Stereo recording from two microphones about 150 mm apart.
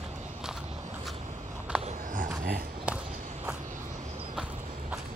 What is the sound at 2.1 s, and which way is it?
Dog, 90° right.